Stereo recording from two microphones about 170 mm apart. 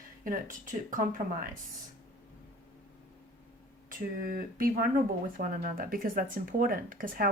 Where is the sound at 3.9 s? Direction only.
55° right (ahead or behind).